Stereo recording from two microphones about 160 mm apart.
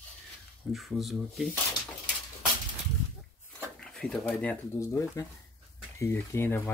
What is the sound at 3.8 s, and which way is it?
Speech, 5° left (ahead or behind).